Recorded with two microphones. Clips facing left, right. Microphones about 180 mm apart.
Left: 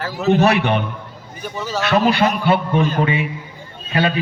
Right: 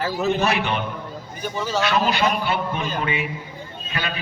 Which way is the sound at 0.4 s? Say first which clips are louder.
Left 6 dB; 60° left (ahead or behind).